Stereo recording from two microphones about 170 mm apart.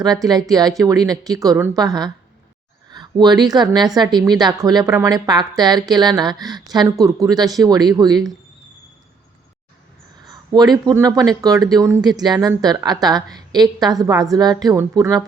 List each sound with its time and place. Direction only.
0.0 s a woman's voice: 20° right (ahead or behind)
10.2 s a woman's voice: 25° right (ahead or behind)